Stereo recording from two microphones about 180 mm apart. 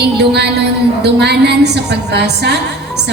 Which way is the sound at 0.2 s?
65° right (ahead or behind).